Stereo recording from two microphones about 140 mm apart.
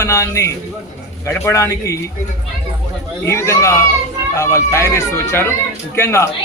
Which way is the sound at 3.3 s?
20° left (ahead or behind).